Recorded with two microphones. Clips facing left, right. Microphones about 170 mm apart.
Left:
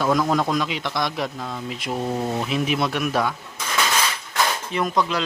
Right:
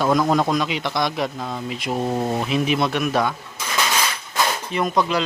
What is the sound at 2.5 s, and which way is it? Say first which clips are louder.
Speech: right 2 dB; centre (ahead or behind).